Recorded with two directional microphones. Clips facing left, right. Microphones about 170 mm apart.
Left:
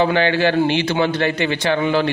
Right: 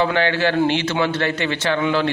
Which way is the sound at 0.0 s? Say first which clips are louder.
Left 2 dB; 20° left (ahead or behind).